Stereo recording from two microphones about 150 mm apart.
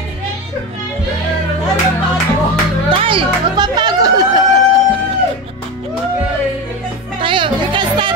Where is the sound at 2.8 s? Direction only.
35° right (ahead or behind).